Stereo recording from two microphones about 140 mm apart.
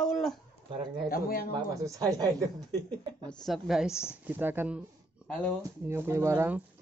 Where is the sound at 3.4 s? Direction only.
Centre (ahead or behind).